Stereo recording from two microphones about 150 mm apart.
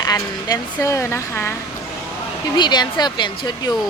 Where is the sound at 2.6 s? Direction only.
30° left (ahead or behind).